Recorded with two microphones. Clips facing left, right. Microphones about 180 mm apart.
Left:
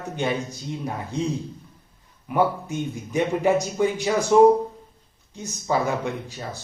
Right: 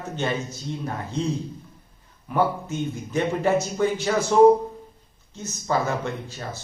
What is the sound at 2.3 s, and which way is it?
Speech, 15° left (ahead or behind).